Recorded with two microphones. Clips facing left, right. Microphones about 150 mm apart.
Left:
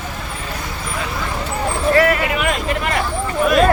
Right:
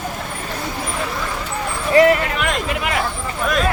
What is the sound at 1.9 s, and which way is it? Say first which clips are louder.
Vehicle: right 3 dB; 20° right (ahead or behind).